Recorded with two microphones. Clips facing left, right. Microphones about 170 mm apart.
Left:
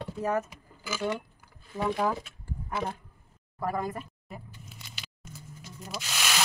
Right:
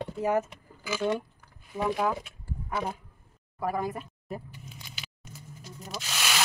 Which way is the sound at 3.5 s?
5° right (ahead or behind).